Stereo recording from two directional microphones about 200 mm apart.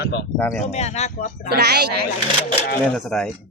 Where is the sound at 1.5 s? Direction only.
55° right (ahead or behind).